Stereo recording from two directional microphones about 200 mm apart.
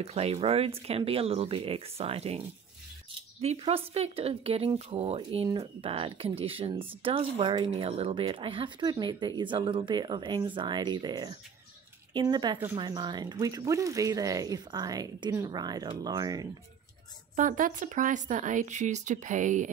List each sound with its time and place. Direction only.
0.0 s speech: 30° right (ahead or behind)
17.4 s speech: 40° right (ahead or behind)